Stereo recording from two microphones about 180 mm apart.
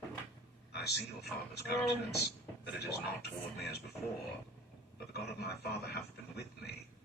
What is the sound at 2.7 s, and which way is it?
A man's voice, 65° left (ahead or behind).